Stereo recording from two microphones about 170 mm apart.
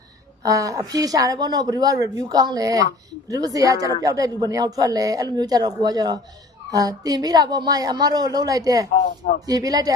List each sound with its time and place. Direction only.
0.4 s a woman's voice: 20° right (ahead or behind)
8.9 s speech: 60° left (ahead or behind)
9.5 s a woman's voice: 20° right (ahead or behind)